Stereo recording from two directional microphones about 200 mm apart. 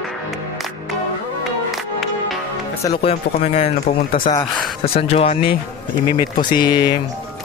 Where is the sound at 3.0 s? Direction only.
30° left (ahead or behind).